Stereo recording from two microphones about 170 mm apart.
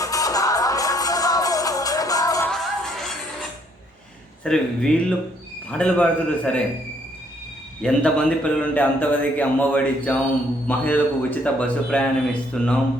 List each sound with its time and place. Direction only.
0.0 s music: 20° left (ahead or behind)
2.5 s music: centre (ahead or behind)
4.4 s a man's voice: 5° left (ahead or behind)
7.8 s a man's voice: 5° left (ahead or behind)